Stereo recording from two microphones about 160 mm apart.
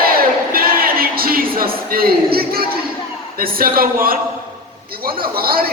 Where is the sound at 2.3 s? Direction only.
70° right (ahead or behind).